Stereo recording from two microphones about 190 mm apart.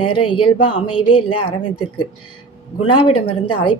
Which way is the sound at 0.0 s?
25° left (ahead or behind).